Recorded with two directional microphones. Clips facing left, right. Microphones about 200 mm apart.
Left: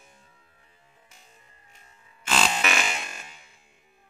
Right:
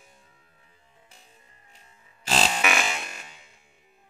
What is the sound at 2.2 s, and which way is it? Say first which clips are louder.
Music: even; 35° right (ahead or behind).